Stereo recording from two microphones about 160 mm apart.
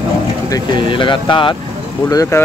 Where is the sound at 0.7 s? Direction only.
30° left (ahead or behind).